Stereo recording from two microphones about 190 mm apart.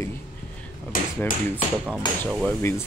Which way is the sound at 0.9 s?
45° left (ahead or behind).